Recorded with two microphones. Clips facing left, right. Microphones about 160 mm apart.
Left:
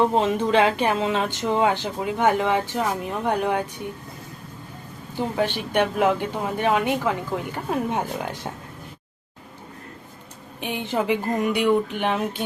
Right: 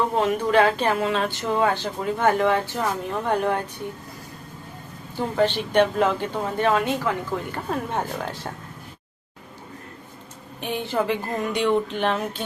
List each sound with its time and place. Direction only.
0.1 s speech: 20° left (ahead or behind)
5.1 s speech: 10° left (ahead or behind)
10.6 s speech: 15° left (ahead or behind)